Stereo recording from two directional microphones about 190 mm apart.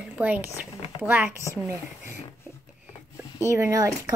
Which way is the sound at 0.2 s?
10° right (ahead or behind).